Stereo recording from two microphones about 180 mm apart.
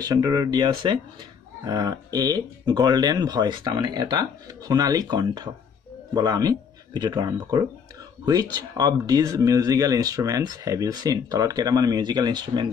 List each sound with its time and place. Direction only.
0.0 s speech: 20° right (ahead or behind)